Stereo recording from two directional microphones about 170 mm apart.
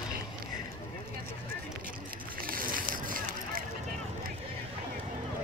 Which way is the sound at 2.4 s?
55° right (ahead or behind).